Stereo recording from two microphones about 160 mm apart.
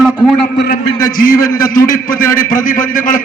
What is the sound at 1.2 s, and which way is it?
A man's voice, 65° left (ahead or behind).